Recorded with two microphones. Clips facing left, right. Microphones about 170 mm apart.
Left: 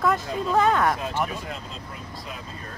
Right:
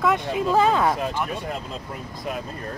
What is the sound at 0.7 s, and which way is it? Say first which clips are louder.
Speech: right 2 dB; 20° right (ahead or behind).